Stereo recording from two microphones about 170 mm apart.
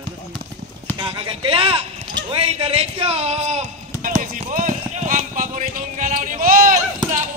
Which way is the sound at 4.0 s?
45° right (ahead or behind).